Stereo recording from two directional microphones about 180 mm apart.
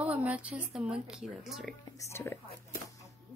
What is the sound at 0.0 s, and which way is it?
Speech, 5° right (ahead or behind).